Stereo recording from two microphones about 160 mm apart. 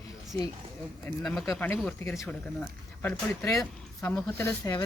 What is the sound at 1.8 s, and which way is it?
Speech, 20° left (ahead or behind).